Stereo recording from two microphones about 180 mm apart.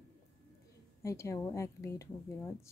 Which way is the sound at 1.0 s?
15° left (ahead or behind).